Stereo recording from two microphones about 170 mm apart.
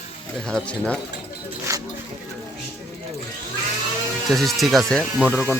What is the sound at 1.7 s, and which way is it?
Speech, 15° right (ahead or behind).